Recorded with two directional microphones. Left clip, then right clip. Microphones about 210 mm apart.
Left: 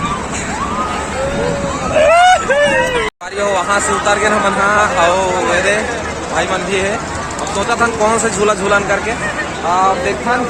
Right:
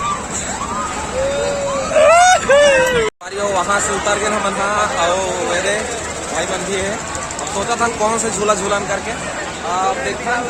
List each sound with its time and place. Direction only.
2.0 s vehicle: 55° right (ahead or behind)
3.4 s speech: 5° right (ahead or behind)
7.7 s speech: 10° right (ahead or behind)